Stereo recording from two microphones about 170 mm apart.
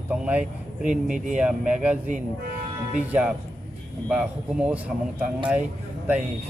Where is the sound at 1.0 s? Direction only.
50° right (ahead or behind).